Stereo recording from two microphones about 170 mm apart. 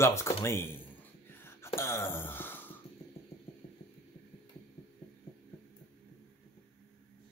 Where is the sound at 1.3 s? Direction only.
15° left (ahead or behind).